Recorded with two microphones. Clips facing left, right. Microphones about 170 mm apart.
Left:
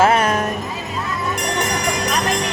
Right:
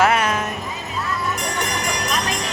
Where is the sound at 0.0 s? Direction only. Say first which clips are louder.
Left 3 dB; 30° left (ahead or behind).